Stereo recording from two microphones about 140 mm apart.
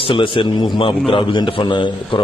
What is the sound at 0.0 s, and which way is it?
A man's voice, 40° left (ahead or behind).